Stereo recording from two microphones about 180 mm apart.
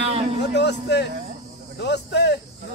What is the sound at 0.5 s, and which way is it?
A man's voice, 70° left (ahead or behind).